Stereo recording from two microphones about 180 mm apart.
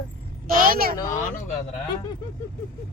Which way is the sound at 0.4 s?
50° right (ahead or behind).